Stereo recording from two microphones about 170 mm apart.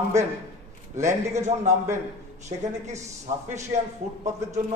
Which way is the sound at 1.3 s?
40° right (ahead or behind).